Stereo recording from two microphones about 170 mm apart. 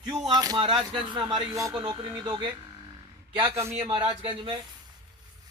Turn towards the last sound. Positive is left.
turn(degrees=-30)  # may be behind; listen again after turning